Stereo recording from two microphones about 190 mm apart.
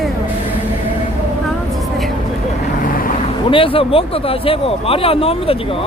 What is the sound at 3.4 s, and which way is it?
Speech, 30° left (ahead or behind).